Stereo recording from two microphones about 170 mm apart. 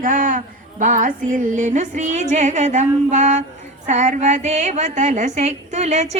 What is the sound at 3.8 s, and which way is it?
A woman's voice, 45° right (ahead or behind).